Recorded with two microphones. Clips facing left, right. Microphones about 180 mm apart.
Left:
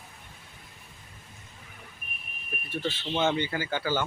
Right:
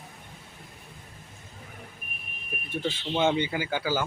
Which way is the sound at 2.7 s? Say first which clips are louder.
Right 1 dB; 15° right (ahead or behind).